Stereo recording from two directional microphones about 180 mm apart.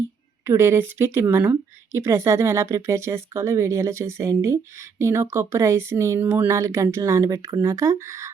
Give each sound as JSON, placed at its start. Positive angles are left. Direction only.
{"t": 0.4, "sound": "speech", "side_deg": -15}